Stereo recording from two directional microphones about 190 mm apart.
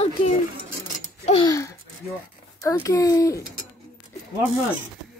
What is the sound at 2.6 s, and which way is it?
Speech, 15° left (ahead or behind).